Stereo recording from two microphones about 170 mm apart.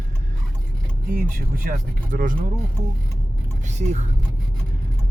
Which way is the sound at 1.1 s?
60° right (ahead or behind).